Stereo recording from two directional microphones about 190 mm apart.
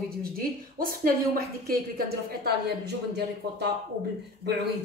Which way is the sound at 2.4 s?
60° right (ahead or behind).